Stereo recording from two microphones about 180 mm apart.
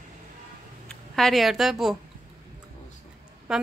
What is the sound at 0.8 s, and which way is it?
Speech, centre (ahead or behind).